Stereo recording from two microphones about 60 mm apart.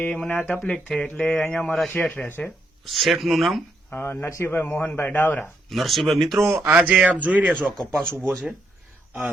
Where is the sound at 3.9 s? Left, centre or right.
Left.